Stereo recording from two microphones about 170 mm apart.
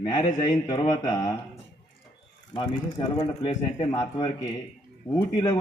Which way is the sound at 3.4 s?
25° left (ahead or behind).